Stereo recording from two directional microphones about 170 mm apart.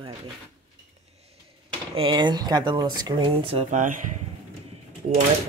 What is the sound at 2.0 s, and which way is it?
Speech, 30° right (ahead or behind).